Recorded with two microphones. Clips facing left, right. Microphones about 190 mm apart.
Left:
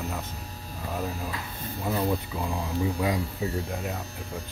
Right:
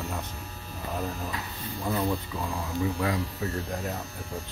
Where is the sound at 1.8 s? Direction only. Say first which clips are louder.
Left 1 dB; 5° left (ahead or behind).